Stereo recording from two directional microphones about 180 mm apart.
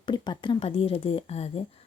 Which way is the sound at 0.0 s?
25° left (ahead or behind).